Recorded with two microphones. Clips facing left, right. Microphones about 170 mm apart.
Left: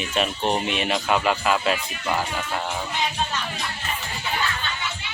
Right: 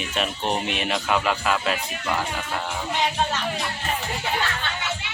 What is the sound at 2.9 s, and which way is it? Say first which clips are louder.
Music: right 3 dB; 70° right (ahead or behind).